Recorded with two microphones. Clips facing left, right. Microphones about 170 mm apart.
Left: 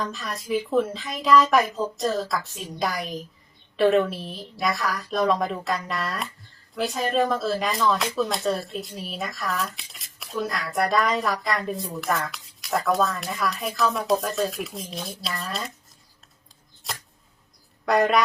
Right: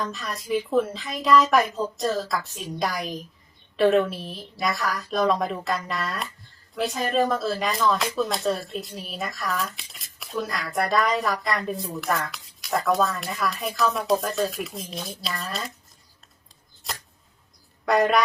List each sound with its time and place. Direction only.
0.0 s speech: centre (ahead or behind)
16.8 s arrow: centre (ahead or behind)
17.8 s speech: centre (ahead or behind)